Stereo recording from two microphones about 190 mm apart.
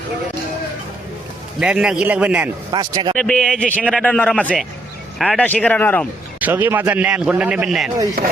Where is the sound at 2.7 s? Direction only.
20° right (ahead or behind).